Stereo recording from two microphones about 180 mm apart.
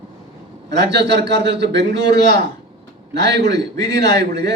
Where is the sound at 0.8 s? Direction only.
70° right (ahead or behind).